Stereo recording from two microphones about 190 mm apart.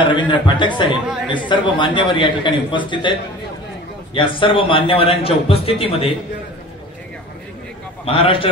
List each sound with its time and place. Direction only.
0.0 s a man's voice: 25° left (ahead or behind)
8.0 s a man's voice: 30° left (ahead or behind)